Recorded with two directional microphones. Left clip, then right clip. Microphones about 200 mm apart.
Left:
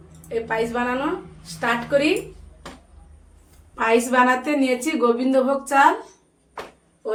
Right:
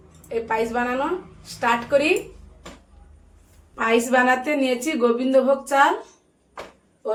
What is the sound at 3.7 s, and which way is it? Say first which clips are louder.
A woman's voice: left 1 dB; 10° right (ahead or behind).